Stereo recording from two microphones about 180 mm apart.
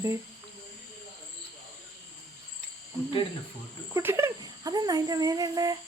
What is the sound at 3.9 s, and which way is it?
Speech, 15° right (ahead or behind).